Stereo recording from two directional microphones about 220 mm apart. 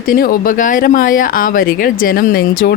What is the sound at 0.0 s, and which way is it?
Speech, 40° left (ahead or behind).